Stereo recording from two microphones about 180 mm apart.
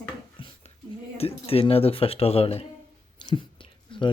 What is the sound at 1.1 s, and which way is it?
Speech, 35° left (ahead or behind).